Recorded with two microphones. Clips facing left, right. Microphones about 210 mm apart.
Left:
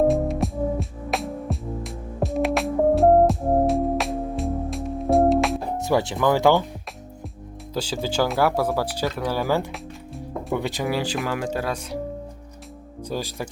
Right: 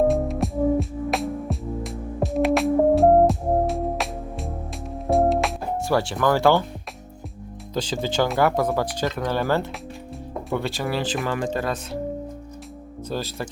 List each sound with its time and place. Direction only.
0.1 s music: centre (ahead or behind)
5.9 s speech: 20° left (ahead or behind)
7.7 s speech: 10° left (ahead or behind)
13.1 s speech: 15° left (ahead or behind)